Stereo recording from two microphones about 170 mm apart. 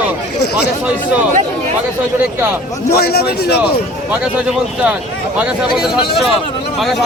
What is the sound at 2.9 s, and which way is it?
Speech, 65° left (ahead or behind).